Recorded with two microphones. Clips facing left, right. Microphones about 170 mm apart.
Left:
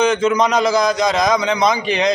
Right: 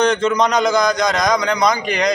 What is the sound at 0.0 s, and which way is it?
A man's voice, 5° left (ahead or behind).